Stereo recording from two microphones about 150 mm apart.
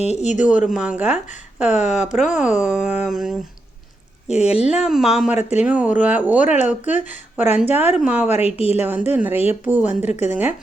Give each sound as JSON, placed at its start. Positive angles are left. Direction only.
{"t": 0.0, "sound": "speech", "side_deg": 50}
{"t": 0.6, "sound": "speech", "side_deg": -5}
{"t": 1.6, "sound": "speech", "side_deg": 50}
{"t": 2.1, "sound": "speech", "side_deg": -5}
{"t": 4.3, "sound": "speech", "side_deg": 45}
{"t": 4.7, "sound": "speech", "side_deg": -5}
{"t": 8.3, "sound": "speech", "side_deg": 45}
{"t": 8.8, "sound": "speech", "side_deg": -10}